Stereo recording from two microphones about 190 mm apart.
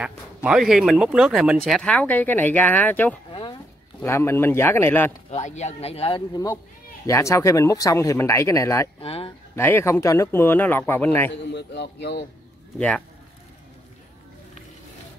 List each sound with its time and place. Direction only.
0.0 s speech: 5° right (ahead or behind)
3.3 s a sound: 25° left (ahead or behind)
4.0 s speech: 10° left (ahead or behind)
5.3 s speech: 35° left (ahead or behind); by 8.8 s 15° left (ahead or behind)
9.0 s speech: 30° left (ahead or behind)
9.6 s speech: 10° left (ahead or behind)
11.3 s a man's voice: 65° left (ahead or behind)
12.7 s speech: 5° left (ahead or behind)